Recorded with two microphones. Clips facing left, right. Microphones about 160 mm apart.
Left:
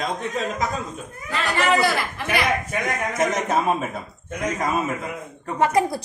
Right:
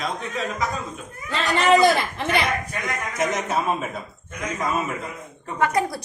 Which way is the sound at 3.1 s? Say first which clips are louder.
Left 1 dB; 45° left (ahead or behind).